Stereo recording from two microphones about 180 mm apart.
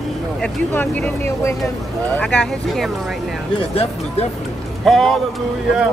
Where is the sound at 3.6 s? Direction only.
35° left (ahead or behind).